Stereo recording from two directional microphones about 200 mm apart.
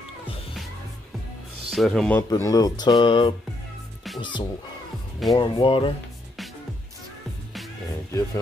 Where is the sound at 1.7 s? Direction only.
Centre (ahead or behind).